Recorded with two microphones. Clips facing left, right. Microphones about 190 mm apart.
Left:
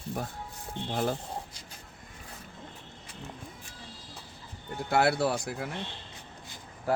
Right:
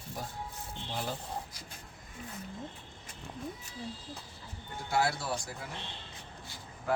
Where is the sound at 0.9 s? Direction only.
50° left (ahead or behind).